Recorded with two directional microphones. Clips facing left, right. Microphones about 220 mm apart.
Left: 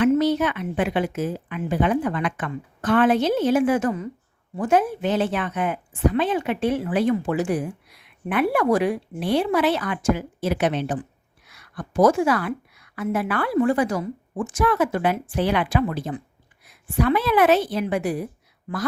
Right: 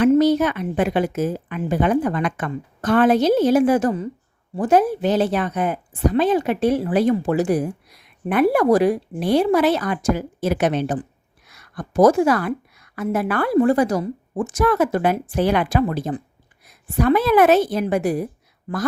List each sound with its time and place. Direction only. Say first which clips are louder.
0.0 s a woman's voice: right 4 dB; 40° right (ahead or behind)